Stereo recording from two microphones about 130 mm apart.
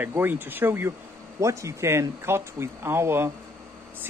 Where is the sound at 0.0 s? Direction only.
15° right (ahead or behind).